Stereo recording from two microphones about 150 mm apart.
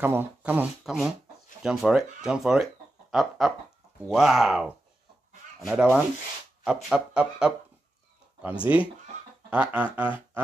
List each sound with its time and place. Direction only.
0.0 s speech: 15° right (ahead or behind)
5.7 s music: 5° right (ahead or behind)
6.6 s speech: 5° right (ahead or behind)
8.7 s music: 15° right (ahead or behind)